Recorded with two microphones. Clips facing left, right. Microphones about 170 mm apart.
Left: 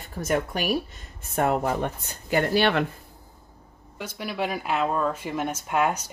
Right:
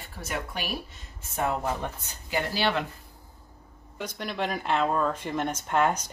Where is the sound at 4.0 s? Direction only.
5° left (ahead or behind).